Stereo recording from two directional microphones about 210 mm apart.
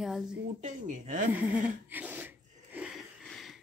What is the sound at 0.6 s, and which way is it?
Speech, 35° right (ahead or behind).